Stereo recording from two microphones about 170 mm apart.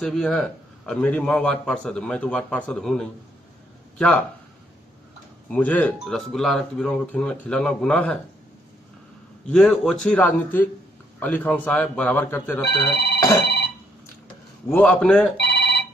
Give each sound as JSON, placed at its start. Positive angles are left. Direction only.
{"t": 0.0, "sound": "a man's voice", "side_deg": 5}
{"t": 5.5, "sound": "a man's voice", "side_deg": 10}
{"t": 9.5, "sound": "a man's voice", "side_deg": 0}
{"t": 13.2, "sound": "telephone bell ringing", "side_deg": 20}
{"t": 14.7, "sound": "a man's voice", "side_deg": 5}
{"t": 15.3, "sound": "telephone bell ringing", "side_deg": 80}